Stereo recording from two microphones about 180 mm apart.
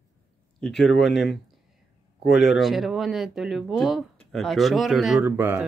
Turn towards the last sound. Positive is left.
turn(degrees=-10)  # may be behind; listen again after turning